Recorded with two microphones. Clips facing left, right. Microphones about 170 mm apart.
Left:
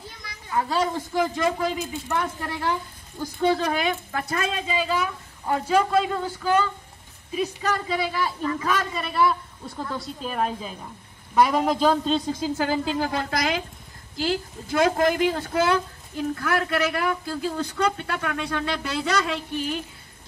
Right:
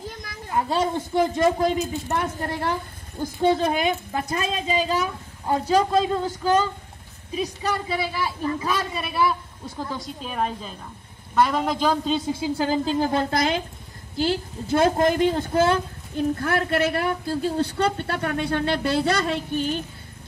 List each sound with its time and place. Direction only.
0.2 s a sound: 45° right (ahead or behind)
0.7 s a woman's voice: 25° right (ahead or behind)
1.6 s a woman's voice: 40° right (ahead or behind)
3.2 s a woman's voice: 25° right (ahead or behind)
4.7 s a woman's voice: 40° right (ahead or behind)
5.9 s a woman's voice: 20° right (ahead or behind)
6.4 s a woman's voice: 40° right (ahead or behind)
7.6 s a woman's voice: 10° right (ahead or behind)
13.0 s a woman's voice: 25° right (ahead or behind)
18.9 s a woman's voice: 55° right (ahead or behind)
19.2 s a woman's voice: 30° right (ahead or behind)